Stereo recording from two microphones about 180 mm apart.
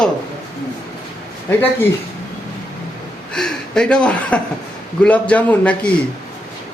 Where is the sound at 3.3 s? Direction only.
5° left (ahead or behind).